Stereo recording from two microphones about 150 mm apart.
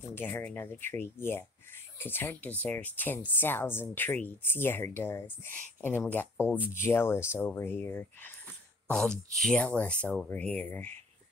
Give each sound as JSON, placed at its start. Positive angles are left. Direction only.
{"t": 0.1, "sound": "speech", "side_deg": 10}
{"t": 8.9, "sound": "speech", "side_deg": 5}